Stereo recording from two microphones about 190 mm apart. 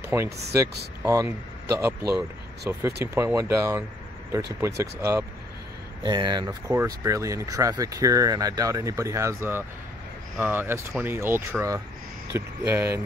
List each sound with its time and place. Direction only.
0.1 s speech: 10° right (ahead or behind)